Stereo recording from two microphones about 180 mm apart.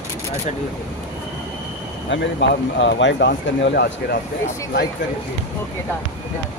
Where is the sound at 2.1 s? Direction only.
90° left.